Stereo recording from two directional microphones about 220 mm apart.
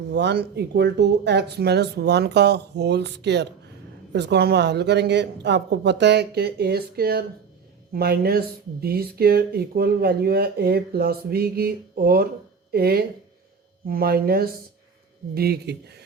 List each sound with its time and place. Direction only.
0.1 s speech: 50° right (ahead or behind)